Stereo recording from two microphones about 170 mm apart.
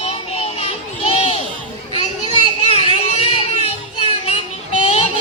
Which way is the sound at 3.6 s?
35° left (ahead or behind).